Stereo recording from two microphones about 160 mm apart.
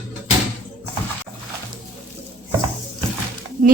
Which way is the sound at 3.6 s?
55° right (ahead or behind).